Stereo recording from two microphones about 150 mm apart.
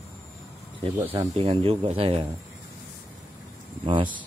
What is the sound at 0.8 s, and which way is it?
Speech, 40° right (ahead or behind).